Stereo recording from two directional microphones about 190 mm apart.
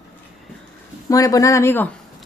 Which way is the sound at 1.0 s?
20° left (ahead or behind).